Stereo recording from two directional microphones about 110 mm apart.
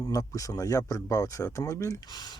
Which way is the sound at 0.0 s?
30° left (ahead or behind).